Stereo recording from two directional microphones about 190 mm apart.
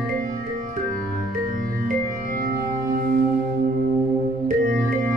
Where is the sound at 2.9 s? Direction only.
50° right (ahead or behind).